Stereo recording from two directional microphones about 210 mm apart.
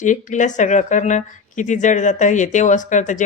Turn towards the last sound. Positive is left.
turn(degrees=35)  # may be behind; listen again after turning